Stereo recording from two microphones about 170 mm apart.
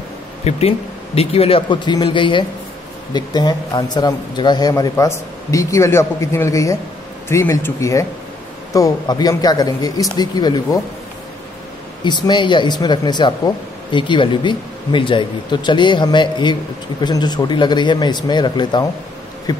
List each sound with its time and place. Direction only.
0.4 s a man's voice: 40° left (ahead or behind)
12.0 s speech: 25° left (ahead or behind)